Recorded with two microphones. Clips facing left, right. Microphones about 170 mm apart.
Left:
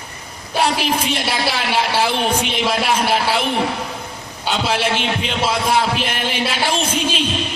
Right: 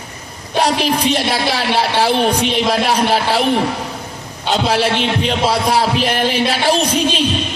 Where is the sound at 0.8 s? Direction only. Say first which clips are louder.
Right 4 dB; 40° right (ahead or behind).